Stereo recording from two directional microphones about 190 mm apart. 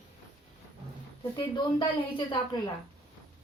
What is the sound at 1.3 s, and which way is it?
A woman's voice, 25° left (ahead or behind).